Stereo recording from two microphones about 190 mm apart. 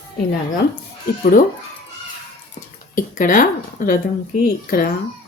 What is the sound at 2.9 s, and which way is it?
A woman's voice, 45° left (ahead or behind).